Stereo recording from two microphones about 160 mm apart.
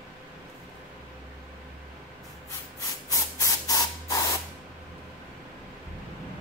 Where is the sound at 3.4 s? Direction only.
20° left (ahead or behind).